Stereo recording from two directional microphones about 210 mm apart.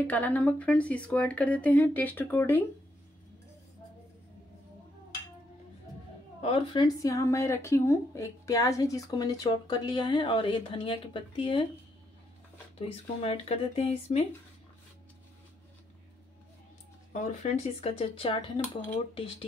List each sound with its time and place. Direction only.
0.0 s speech: 10° left (ahead or behind)
6.4 s speech: 25° left (ahead or behind)
12.7 s speech: 30° left (ahead or behind)
17.1 s speech: 35° left (ahead or behind)